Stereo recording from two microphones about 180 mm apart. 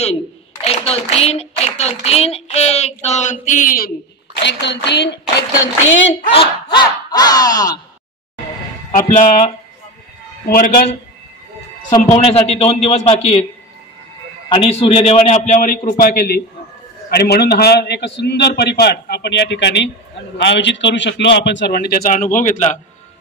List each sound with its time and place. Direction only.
0.7 s a woman's voice: 35° left (ahead or behind); by 3.9 s 50° left (ahead or behind)
4.4 s a man's voice: 75° left (ahead or behind)
6.0 s speech: 30° left (ahead or behind)
9.0 s speech: 45° left (ahead or behind)
10.4 s a man's voice: 55° left (ahead or behind)
12.1 s a woman's voice: 35° left (ahead or behind)
14.5 s a woman's voice: 30° left (ahead or behind)